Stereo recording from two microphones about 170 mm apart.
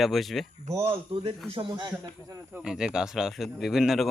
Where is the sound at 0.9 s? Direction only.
35° right (ahead or behind); by 2.6 s 20° right (ahead or behind).